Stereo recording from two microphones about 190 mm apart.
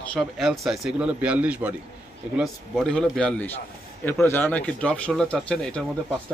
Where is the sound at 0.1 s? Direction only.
Centre (ahead or behind).